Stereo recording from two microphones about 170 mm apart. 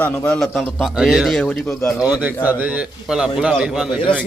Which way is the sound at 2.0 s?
10° right (ahead or behind).